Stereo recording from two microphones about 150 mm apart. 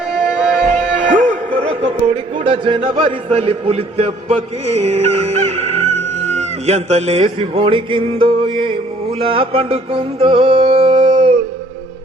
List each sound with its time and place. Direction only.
0.3 s music: 5° right (ahead or behind)
1.5 s music: 35° right (ahead or behind)